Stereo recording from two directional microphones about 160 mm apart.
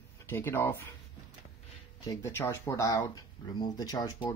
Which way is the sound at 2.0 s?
20° left (ahead or behind).